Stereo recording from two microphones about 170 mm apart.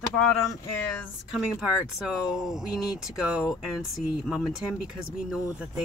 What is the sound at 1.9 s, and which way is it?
Speech, 5° right (ahead or behind).